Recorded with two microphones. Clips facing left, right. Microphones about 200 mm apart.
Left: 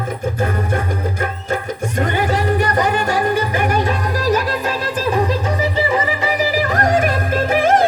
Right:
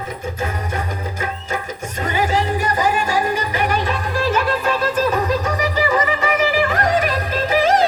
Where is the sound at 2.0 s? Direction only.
60° left (ahead or behind).